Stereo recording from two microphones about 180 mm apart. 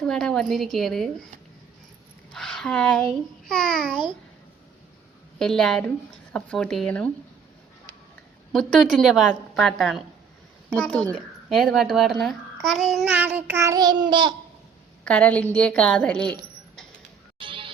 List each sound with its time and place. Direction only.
0.0 s a woman's voice: 5° left (ahead or behind)
2.3 s a woman's voice: 5° left (ahead or behind)
5.4 s a woman's voice: centre (ahead or behind)
8.5 s a woman's voice: centre (ahead or behind)
12.2 s child singing: centre (ahead or behind); by 14.3 s 25° right (ahead or behind)
15.0 s a woman's voice: 5° left (ahead or behind)
17.4 s music: 30° right (ahead or behind)